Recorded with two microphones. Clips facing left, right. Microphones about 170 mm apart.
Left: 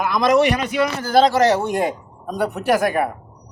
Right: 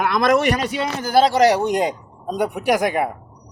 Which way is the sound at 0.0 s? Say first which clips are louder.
Left 1 dB; 55° right (ahead or behind).